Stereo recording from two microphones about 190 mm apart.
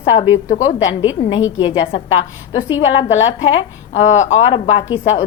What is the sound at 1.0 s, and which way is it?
Speech, 25° left (ahead or behind).